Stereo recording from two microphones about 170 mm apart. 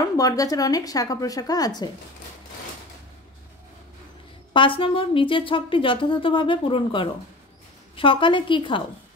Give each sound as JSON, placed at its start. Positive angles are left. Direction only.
{"t": 0.2, "sound": "a woman's voice", "side_deg": 20}
{"t": 4.6, "sound": "a woman's voice", "side_deg": 30}